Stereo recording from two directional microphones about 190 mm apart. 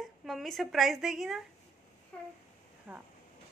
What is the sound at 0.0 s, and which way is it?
A woman's voice, centre (ahead or behind).